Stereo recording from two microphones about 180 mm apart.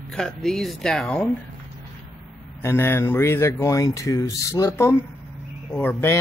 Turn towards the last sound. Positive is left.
turn(degrees=10)  # may be behind; listen again after turning